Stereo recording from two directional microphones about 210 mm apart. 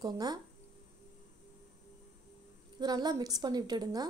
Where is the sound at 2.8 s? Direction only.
20° right (ahead or behind).